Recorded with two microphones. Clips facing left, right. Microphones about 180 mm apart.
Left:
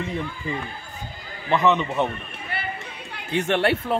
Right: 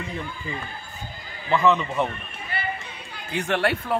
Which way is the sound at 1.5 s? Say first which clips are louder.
Even; 20° left (ahead or behind).